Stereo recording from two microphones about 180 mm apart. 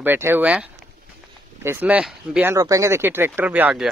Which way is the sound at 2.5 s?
20° right (ahead or behind).